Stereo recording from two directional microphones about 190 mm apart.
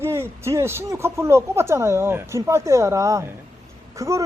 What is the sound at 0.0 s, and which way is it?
Speech, 15° right (ahead or behind).